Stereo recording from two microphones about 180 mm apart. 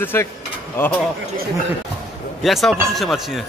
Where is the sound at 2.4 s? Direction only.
Centre (ahead or behind).